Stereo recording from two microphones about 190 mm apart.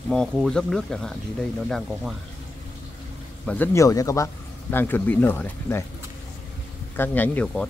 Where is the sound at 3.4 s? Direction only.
10° left (ahead or behind).